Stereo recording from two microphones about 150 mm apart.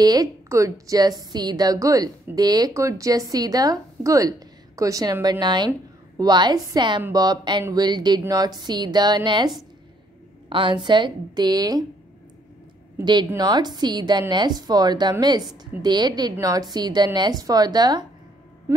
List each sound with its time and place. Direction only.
0.0 s a woman's voice: 25° right (ahead or behind)
10.5 s a woman's voice: 35° right (ahead or behind)
13.0 s a woman's voice: 30° right (ahead or behind)